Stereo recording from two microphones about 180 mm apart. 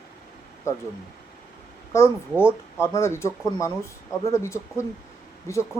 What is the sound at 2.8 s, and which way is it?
Speech, 15° left (ahead or behind).